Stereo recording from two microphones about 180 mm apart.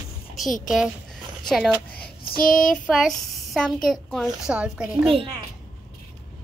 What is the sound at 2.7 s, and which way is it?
A child's voice, centre (ahead or behind).